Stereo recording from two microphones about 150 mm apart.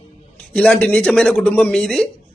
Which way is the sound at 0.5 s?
10° left (ahead or behind).